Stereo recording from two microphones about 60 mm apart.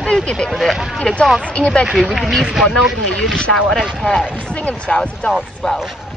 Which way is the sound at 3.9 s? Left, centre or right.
Centre.